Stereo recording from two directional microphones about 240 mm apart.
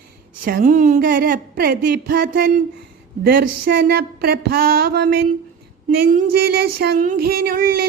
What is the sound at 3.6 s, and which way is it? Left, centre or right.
Speech, right.